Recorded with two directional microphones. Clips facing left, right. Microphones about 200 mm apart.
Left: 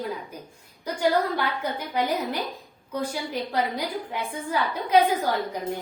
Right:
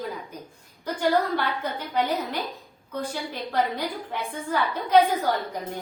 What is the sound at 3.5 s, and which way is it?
A woman's voice, 10° left (ahead or behind).